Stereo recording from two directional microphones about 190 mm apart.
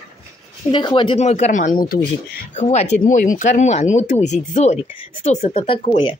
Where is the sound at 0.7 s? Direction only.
25° left (ahead or behind).